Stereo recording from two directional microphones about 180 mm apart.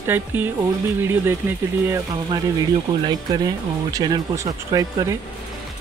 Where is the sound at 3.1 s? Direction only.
20° right (ahead or behind).